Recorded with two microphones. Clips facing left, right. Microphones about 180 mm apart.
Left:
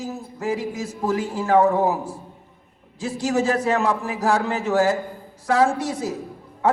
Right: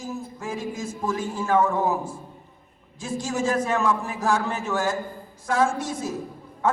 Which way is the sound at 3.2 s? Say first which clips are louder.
Left 3 dB; 65° left (ahead or behind).